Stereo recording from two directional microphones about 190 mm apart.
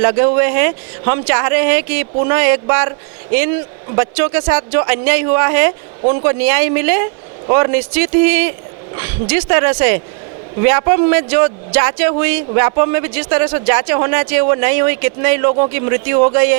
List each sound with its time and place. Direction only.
0.0 s speech: 20° right (ahead or behind)
3.9 s speech: 15° right (ahead or behind)